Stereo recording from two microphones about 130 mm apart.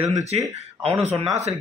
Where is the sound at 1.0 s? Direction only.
55° right (ahead or behind).